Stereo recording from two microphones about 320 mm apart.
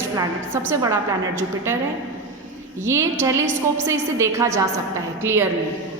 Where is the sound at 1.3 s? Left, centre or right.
Centre.